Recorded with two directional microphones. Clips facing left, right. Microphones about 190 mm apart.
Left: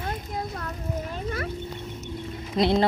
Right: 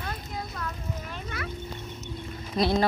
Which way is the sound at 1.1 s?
40° left (ahead or behind).